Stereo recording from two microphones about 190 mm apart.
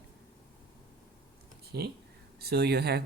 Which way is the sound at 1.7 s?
60° right (ahead or behind).